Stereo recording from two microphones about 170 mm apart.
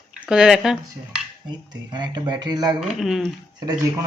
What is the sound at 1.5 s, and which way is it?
Speech, 25° right (ahead or behind).